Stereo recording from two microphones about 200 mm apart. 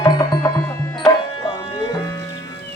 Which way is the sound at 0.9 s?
20° left (ahead or behind).